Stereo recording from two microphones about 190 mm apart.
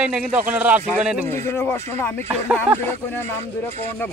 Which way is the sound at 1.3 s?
15° left (ahead or behind).